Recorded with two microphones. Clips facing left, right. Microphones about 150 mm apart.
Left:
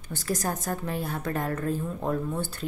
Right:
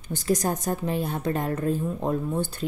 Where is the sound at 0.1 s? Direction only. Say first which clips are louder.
Right 5 dB; 20° right (ahead or behind).